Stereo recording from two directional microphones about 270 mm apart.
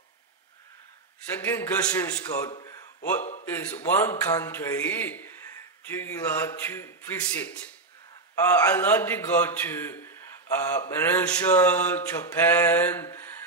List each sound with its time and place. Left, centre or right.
1.4 s a man's voice: centre